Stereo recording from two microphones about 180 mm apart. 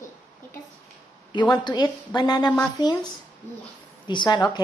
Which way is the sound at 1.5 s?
25° left (ahead or behind).